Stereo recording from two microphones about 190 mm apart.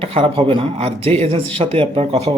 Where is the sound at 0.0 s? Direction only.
30° right (ahead or behind).